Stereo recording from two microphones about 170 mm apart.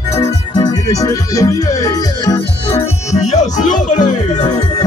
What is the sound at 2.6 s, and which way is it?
Music, 40° left (ahead or behind).